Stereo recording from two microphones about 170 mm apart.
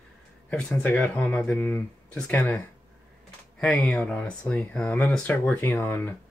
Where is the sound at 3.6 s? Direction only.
5° left (ahead or behind).